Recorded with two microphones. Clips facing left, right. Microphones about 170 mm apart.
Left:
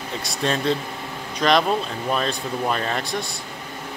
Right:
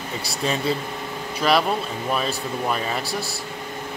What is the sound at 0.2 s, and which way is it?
A man's voice, 5° right (ahead or behind).